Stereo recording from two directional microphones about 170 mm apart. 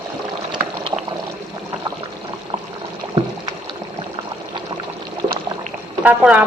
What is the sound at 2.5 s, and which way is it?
Pour, 25° right (ahead or behind).